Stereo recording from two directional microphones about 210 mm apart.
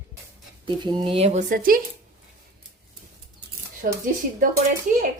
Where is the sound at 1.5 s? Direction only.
45° right (ahead or behind).